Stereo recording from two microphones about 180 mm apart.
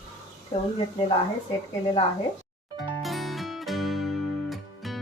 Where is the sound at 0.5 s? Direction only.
35° left (ahead or behind).